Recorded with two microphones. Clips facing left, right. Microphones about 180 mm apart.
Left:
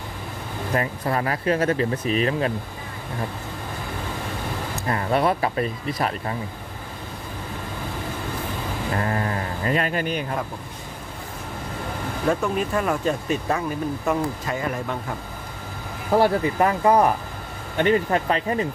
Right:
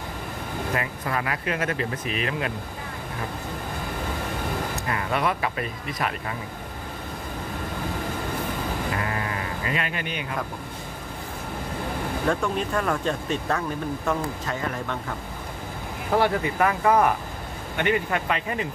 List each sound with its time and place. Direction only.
0.7 s speech: 35° left (ahead or behind)
4.8 s speech: 35° left (ahead or behind)
8.9 s sheep: 40° left (ahead or behind)
12.3 s speech: 5° left (ahead or behind)
16.2 s speech: 25° left (ahead or behind)